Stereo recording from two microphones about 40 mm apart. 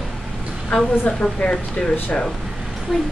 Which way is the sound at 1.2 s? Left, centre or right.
Left.